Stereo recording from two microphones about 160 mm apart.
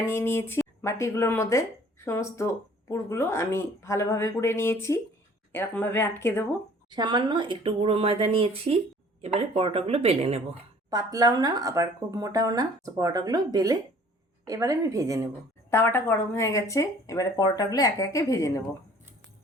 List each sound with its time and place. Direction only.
0.1 s speech: 15° left (ahead or behind)
6.9 s speech: 25° right (ahead or behind)
10.8 s speech: 25° right (ahead or behind)
15.7 s speech: 15° left (ahead or behind)